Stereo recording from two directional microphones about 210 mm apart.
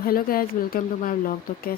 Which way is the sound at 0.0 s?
45° left (ahead or behind).